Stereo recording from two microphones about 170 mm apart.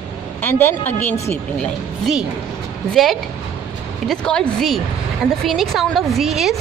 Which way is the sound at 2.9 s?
Centre (ahead or behind).